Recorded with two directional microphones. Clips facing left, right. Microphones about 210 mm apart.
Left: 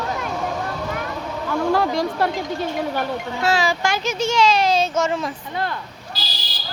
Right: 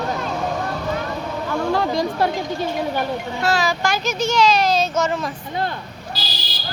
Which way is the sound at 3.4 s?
30° left (ahead or behind).